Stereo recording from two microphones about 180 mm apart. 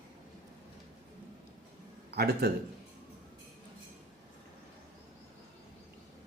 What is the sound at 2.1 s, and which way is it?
Speech, 60° right (ahead or behind).